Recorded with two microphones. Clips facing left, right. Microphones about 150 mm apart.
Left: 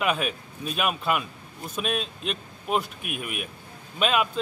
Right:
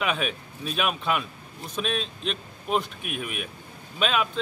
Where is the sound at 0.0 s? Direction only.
Centre (ahead or behind).